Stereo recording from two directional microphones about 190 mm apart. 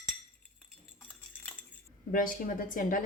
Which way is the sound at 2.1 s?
45° left (ahead or behind).